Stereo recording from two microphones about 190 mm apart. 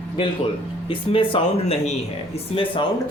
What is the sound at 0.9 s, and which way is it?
Speech, 25° left (ahead or behind).